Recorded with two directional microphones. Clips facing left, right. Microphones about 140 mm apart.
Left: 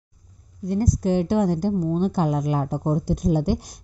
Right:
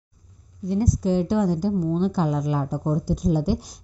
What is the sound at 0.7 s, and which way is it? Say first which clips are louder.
A woman's voice: even; 55° left (ahead or behind).